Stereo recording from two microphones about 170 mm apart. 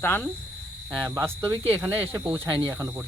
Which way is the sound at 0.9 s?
10° right (ahead or behind).